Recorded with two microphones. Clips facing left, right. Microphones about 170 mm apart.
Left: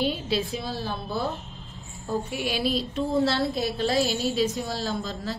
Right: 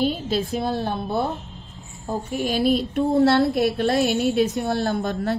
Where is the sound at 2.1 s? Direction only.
40° right (ahead or behind).